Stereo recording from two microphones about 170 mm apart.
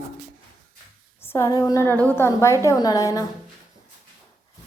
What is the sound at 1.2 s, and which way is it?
A woman's voice, 15° left (ahead or behind).